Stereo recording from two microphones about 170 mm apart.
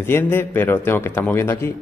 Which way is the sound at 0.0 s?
15° left (ahead or behind).